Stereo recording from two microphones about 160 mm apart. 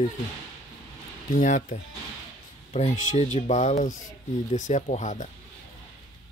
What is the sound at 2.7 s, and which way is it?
Speech, 45° left (ahead or behind).